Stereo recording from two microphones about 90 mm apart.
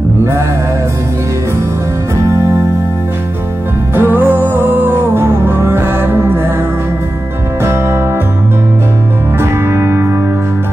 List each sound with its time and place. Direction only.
3.9 s music: 25° right (ahead or behind)
7.6 s music: 30° right (ahead or behind)
9.4 s music: 25° right (ahead or behind)